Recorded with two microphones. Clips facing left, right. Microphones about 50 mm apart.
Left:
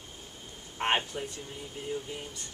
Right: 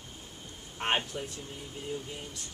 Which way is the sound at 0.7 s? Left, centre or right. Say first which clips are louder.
Left 2 dB; centre.